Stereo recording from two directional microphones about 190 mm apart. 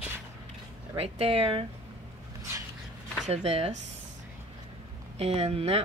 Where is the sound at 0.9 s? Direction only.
30° right (ahead or behind).